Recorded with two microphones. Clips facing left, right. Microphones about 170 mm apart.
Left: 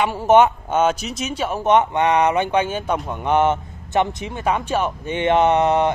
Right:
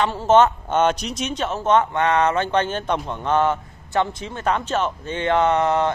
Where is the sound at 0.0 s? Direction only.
15° left (ahead or behind).